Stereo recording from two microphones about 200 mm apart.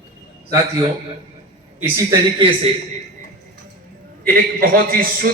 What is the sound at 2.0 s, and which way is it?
Speech, 25° right (ahead or behind).